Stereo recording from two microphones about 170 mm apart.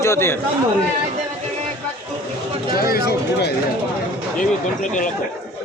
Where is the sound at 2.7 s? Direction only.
65° left (ahead or behind).